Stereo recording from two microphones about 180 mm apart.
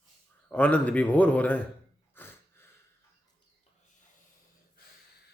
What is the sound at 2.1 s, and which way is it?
Snort, 10° left (ahead or behind).